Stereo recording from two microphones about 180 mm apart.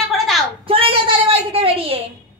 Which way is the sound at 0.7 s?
30° right (ahead or behind).